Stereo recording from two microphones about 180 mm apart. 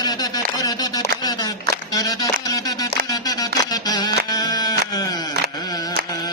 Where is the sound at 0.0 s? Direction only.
20° left (ahead or behind).